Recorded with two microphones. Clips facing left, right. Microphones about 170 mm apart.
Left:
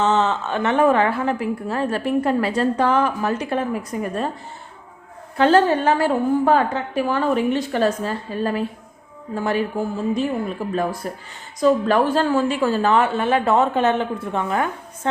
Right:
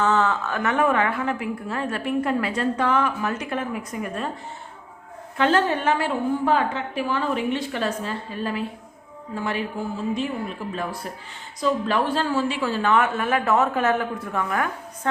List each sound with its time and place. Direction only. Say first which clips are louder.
0.0 s a woman's voice: left 2 dB; 25° left (ahead or behind)
5.4 s a woman's voice: left 5 dB; 35° left (ahead or behind)